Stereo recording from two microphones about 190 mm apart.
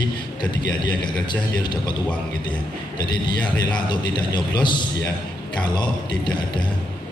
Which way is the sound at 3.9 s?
25° left (ahead or behind).